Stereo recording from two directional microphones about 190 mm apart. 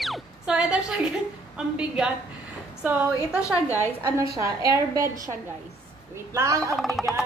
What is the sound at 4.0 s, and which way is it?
A woman's voice, 15° right (ahead or behind).